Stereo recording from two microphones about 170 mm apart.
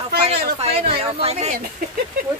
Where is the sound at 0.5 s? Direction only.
35° right (ahead or behind).